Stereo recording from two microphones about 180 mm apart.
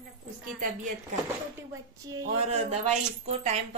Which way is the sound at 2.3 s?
35° right (ahead or behind).